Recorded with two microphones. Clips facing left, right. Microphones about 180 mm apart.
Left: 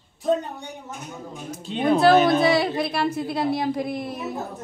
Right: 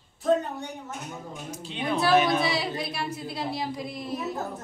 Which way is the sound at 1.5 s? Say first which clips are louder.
Left 8 dB; 50° left (ahead or behind).